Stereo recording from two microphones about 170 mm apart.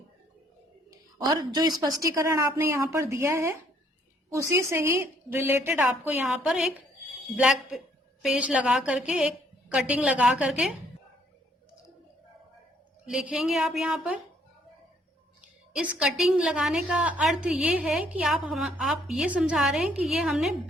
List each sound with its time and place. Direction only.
0.9 s a sound: 25° right (ahead or behind)
2.0 s a woman's voice: 20° right (ahead or behind); by 6.7 s 5° right (ahead or behind)
8.2 s a woman's voice: 5° right (ahead or behind)
13.1 s a woman's voice: 5° right (ahead or behind)
15.7 s a woman's voice: 5° right (ahead or behind)